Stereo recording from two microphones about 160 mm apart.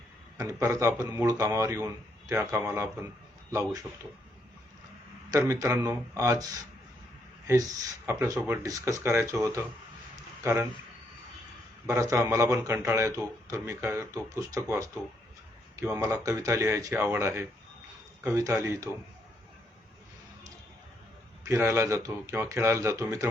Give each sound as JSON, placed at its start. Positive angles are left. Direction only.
{"t": 0.3, "sound": "a man's voice", "side_deg": -20}
{"t": 5.3, "sound": "speech", "side_deg": -20}
{"t": 8.0, "sound": "a man's voice", "side_deg": -15}
{"t": 11.9, "sound": "a man's voice", "side_deg": -20}
{"t": 21.4, "sound": "a man's voice", "side_deg": -15}